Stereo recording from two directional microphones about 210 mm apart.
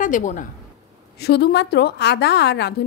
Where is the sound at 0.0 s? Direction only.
35° left (ahead or behind).